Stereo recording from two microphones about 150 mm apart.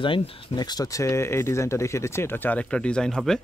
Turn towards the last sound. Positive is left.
turn(degrees=5)  # may be behind; listen again after turning